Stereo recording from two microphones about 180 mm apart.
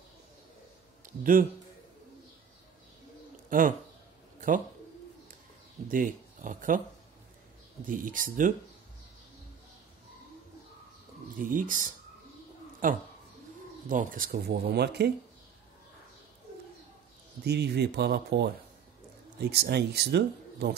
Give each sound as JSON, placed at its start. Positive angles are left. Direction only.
{"t": 1.0, "sound": "a man's voice", "side_deg": -50}
{"t": 3.4, "sound": "speech", "side_deg": -50}
{"t": 5.9, "sound": "speech", "side_deg": -50}
{"t": 7.8, "sound": "speech", "side_deg": -50}
{"t": 11.3, "sound": "speech", "side_deg": -50}
{"t": 17.5, "sound": "speech", "side_deg": -65}